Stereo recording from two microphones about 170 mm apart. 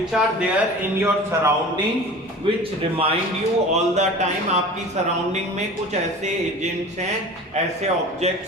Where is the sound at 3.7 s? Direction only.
40° right (ahead or behind).